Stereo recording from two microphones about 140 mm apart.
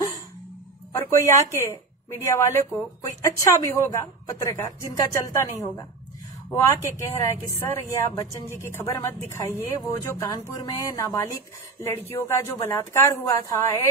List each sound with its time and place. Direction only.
0.9 s speech: 20° left (ahead or behind)